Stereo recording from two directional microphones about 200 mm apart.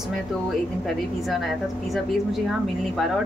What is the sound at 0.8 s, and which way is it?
A woman's voice, centre (ahead or behind).